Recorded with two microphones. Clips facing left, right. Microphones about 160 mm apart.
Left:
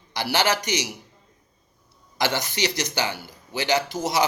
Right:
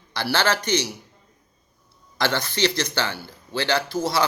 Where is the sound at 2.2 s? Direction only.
15° left (ahead or behind).